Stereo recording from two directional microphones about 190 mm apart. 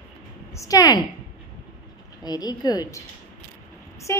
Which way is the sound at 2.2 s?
20° left (ahead or behind).